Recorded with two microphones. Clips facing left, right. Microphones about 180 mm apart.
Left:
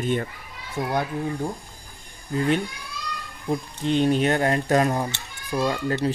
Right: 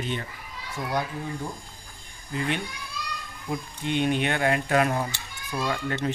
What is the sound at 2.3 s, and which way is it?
Speech, 40° left (ahead or behind).